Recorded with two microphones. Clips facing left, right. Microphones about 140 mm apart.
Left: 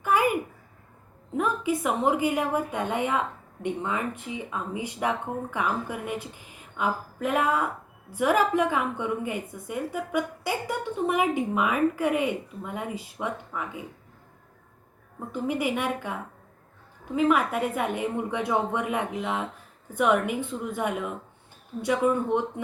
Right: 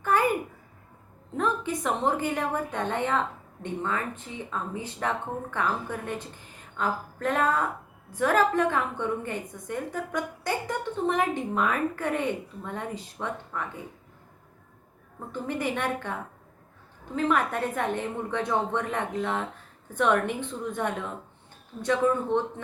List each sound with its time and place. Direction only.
0.0 s a sound: 10° left (ahead or behind)
1.4 s a woman's voice: 10° left (ahead or behind)
15.3 s a woman's voice: 10° left (ahead or behind)
17.2 s a woman's voice: 10° left (ahead or behind)